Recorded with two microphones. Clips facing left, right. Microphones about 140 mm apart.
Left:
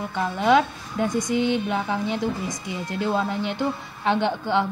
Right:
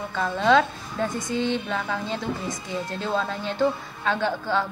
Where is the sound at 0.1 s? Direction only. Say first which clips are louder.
Even; 15° left (ahead or behind).